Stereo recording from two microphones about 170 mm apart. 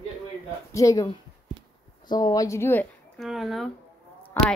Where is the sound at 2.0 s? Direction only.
20° left (ahead or behind).